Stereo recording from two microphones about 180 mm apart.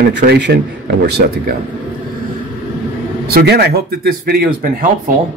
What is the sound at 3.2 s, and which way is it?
A man's voice, 60° right (ahead or behind).